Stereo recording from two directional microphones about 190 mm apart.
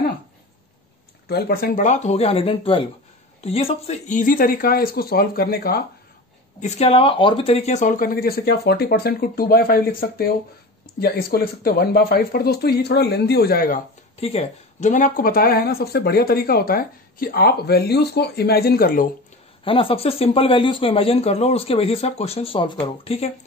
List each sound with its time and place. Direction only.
1.3 s speech: 55° left (ahead or behind)
6.6 s speech: 30° left (ahead or behind); by 13.7 s 50° left (ahead or behind)
14.2 s speech: 35° left (ahead or behind)
19.6 s speech: 30° left (ahead or behind)